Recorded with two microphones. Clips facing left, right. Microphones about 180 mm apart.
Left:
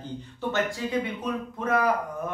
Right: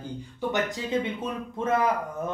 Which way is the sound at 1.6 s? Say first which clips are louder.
Right 1 dB; 25° right (ahead or behind).